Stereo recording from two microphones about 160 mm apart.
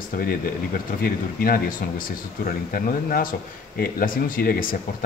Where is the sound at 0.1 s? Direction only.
60° left (ahead or behind).